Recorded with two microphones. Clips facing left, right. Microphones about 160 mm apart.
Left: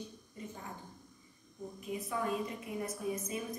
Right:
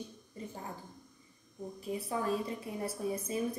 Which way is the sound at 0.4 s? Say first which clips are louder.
Right 2 dB; 30° right (ahead or behind).